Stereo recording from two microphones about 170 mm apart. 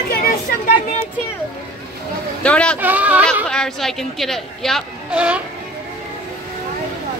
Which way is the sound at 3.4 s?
5° left (ahead or behind).